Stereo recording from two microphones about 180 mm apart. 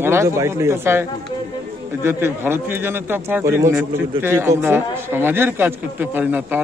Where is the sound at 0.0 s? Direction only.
15° right (ahead or behind).